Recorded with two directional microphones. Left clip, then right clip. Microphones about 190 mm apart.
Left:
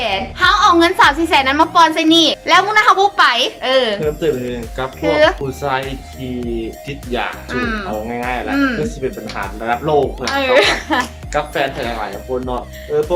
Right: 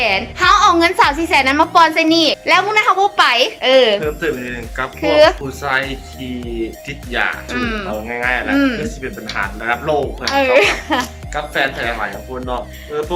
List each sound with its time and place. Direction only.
0.0 s a woman's voice: 5° right (ahead or behind)
4.0 s speech: 15° left (ahead or behind)
4.9 s a woman's voice: 5° right (ahead or behind)
7.1 s speech: 15° left (ahead or behind)
7.5 s speech: 5° right (ahead or behind)
8.0 s speech: 10° left (ahead or behind)
8.4 s speech: 5° right (ahead or behind)
8.8 s speech: 15° left (ahead or behind)
10.2 s speech: 5° right (ahead or behind)
11.3 s speech: 5° left (ahead or behind)